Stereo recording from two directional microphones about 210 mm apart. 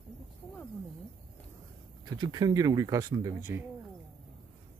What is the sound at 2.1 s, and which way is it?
Speech, 20° right (ahead or behind).